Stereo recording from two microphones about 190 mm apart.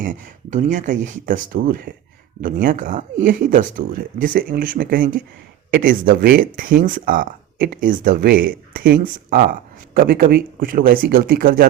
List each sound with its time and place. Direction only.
0.0 s speech: 45° right (ahead or behind)